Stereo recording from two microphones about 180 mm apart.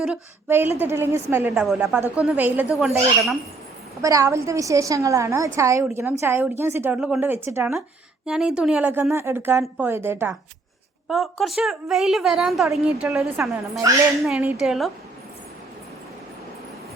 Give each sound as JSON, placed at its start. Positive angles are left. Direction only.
{"t": 0.0, "sound": "speech", "side_deg": -10}
{"t": 4.0, "sound": "a woman's voice", "side_deg": -15}
{"t": 11.1, "sound": "a woman's voice", "side_deg": 0}